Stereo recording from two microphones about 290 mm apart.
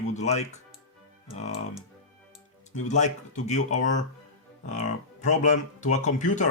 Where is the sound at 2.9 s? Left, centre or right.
Left.